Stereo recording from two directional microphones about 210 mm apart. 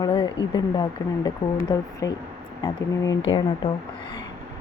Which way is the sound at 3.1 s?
65° left (ahead or behind).